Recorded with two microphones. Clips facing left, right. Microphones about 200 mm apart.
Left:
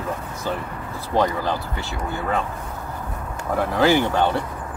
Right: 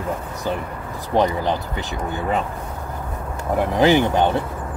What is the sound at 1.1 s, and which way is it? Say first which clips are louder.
Speech: right 2 dB; 20° right (ahead or behind).